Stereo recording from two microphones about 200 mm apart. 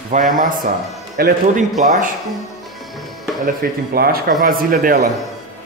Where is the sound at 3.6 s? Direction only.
50° right (ahead or behind).